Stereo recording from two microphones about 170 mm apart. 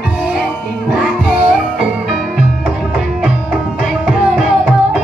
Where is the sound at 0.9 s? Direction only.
5° right (ahead or behind).